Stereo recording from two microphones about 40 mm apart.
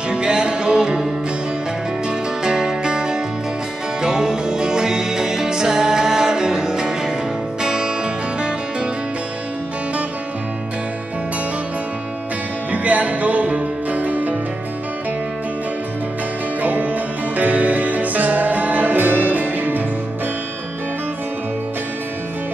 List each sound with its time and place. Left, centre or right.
0.1 s music: right
2.0 s music: centre
12.7 s music: right
16.6 s music: right